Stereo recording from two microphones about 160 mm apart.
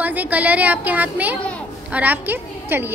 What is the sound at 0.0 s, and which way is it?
A woman's voice, 10° right (ahead or behind).